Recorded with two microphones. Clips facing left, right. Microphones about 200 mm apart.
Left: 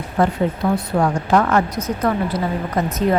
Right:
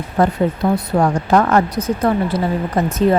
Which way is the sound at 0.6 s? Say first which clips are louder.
Right 2 dB; 30° right (ahead or behind).